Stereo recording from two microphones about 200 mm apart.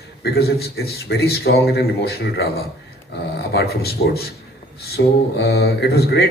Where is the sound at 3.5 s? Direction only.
50° left (ahead or behind).